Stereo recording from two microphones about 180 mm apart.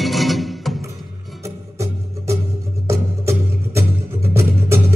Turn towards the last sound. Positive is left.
turn(degrees=-15)  # may be behind; listen again after turning